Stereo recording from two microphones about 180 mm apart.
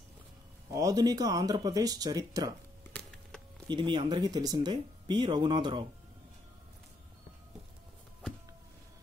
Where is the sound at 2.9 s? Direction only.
5° left (ahead or behind).